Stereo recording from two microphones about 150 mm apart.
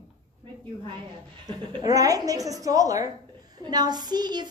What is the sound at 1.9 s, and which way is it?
A woman's voice, 25° right (ahead or behind).